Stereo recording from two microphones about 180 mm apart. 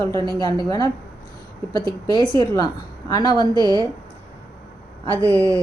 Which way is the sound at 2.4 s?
20° left (ahead or behind).